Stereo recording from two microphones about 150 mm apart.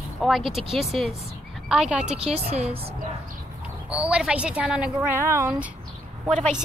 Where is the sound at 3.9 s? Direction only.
5° right (ahead or behind).